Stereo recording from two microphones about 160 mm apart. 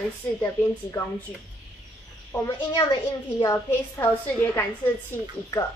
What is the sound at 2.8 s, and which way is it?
A woman's voice, 30° left (ahead or behind).